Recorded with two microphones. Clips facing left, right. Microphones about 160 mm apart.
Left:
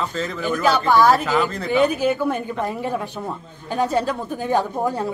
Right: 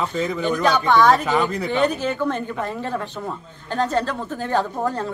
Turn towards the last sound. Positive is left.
turn(degrees=10)  # may be behind; listen again after turning